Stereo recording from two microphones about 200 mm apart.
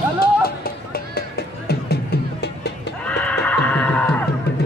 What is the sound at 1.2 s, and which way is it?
Music, 50° left (ahead or behind).